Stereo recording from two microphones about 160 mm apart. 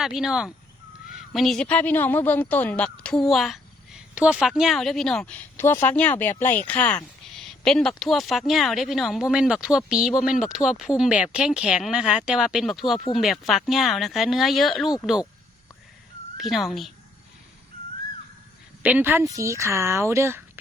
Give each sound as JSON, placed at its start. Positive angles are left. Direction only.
{"t": 0.0, "sound": "a woman's voice", "side_deg": -5}
{"t": 16.4, "sound": "speech", "side_deg": 0}
{"t": 18.8, "sound": "speech", "side_deg": -10}